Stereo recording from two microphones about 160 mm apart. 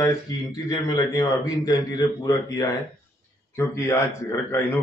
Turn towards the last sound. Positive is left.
turn(degrees=20)  # may be behind; listen again after turning